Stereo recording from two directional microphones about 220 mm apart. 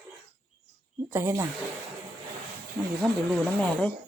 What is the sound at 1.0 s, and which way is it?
Speech, 15° right (ahead or behind).